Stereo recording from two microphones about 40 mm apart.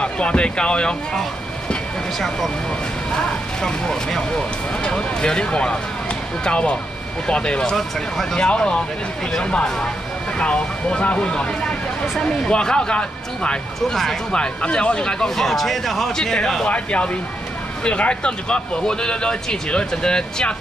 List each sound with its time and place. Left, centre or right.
0.0 s speech: left
2.1 s speech: centre; by 7.7 s left
7.7 s speech: centre
8.5 s speech: left
13.8 s speech: centre
14.3 s speech: left
16.6 s speech: left